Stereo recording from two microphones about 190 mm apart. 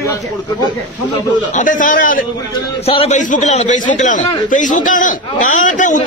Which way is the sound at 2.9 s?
35° left (ahead or behind).